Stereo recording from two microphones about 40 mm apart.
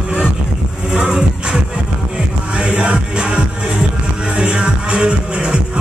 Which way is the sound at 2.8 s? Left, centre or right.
Right.